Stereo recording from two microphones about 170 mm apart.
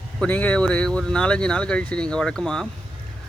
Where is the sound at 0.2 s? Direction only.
10° left (ahead or behind).